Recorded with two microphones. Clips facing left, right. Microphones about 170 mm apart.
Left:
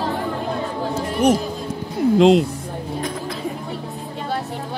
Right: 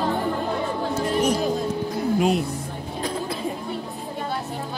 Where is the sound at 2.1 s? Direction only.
90° left.